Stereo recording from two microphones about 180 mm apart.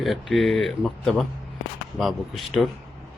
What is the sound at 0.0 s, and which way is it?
Speech, centre (ahead or behind).